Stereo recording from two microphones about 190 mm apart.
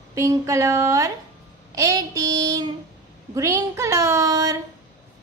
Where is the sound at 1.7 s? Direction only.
15° right (ahead or behind).